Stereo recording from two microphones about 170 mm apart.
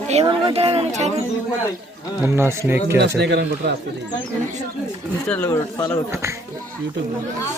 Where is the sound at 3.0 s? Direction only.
85° right.